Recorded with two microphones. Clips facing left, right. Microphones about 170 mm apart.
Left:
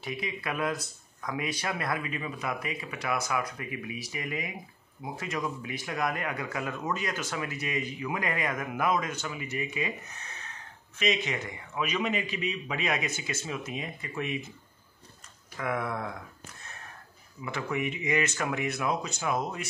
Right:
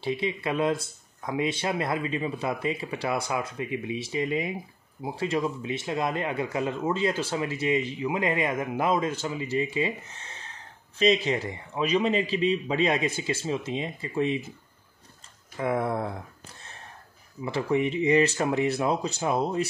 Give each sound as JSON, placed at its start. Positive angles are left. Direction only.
{"t": 0.0, "sound": "speech", "side_deg": -25}
{"t": 15.5, "sound": "speech", "side_deg": -30}